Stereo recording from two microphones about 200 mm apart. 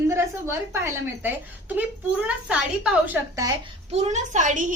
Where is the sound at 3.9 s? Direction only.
35° right (ahead or behind).